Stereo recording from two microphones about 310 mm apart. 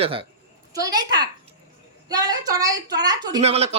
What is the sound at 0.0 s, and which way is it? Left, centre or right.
Child singing, centre.